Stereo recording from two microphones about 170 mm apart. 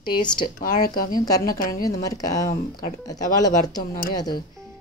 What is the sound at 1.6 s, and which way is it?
Speech, 55° left (ahead or behind).